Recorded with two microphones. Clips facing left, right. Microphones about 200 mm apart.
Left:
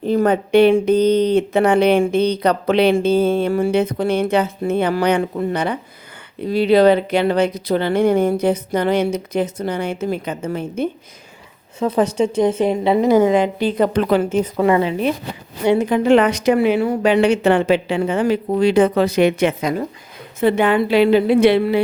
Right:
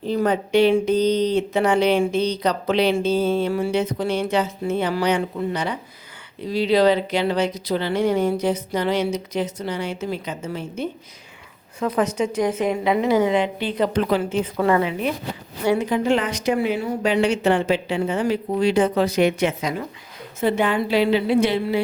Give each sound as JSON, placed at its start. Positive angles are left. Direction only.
{"t": 0.0, "sound": "speech", "side_deg": 55}
{"t": 11.8, "sound": "a woman's voice", "side_deg": 30}
{"t": 13.1, "sound": "speech", "side_deg": 45}
{"t": 14.8, "sound": "a woman's voice", "side_deg": 30}
{"t": 15.8, "sound": "speech", "side_deg": 60}
{"t": 18.1, "sound": "speech", "side_deg": 60}